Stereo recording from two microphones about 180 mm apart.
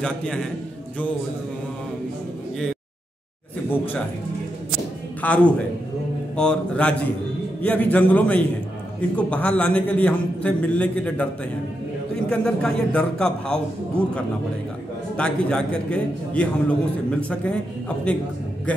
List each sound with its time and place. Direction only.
0.0 s a man's voice: 5° left (ahead or behind)
5.2 s a man's voice: 5° left (ahead or behind)
12.3 s a man's voice: 5° left (ahead or behind)